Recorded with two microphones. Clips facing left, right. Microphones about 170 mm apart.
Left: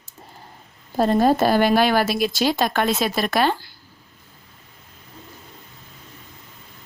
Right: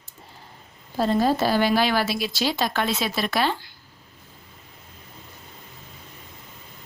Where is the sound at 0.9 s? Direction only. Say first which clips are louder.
Left 4 dB; 50° left (ahead or behind).